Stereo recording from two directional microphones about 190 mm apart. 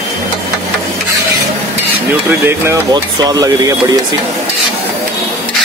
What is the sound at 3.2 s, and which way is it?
Speech, 20° right (ahead or behind).